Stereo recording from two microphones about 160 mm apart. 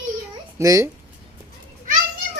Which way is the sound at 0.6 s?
20° right (ahead or behind).